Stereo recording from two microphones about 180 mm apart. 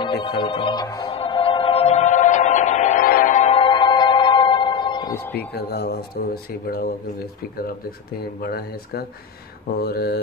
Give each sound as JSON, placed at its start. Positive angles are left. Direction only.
{"t": 0.0, "sound": "music", "side_deg": 25}
{"t": 5.1, "sound": "speech", "side_deg": 10}
{"t": 5.5, "sound": "speech", "side_deg": 65}